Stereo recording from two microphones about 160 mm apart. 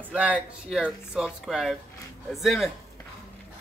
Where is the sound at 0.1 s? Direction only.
10° right (ahead or behind).